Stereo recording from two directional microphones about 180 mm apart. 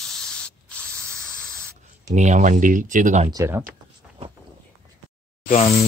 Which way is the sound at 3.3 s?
15° right (ahead or behind).